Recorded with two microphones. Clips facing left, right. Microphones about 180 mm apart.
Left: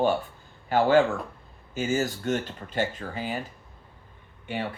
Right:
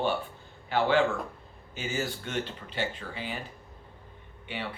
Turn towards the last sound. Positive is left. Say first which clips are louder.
# left 5 dB
turn(degrees=45)  # may be behind; listen again after turning